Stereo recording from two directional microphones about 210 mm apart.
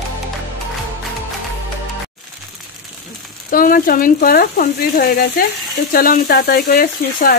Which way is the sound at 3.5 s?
40° left (ahead or behind).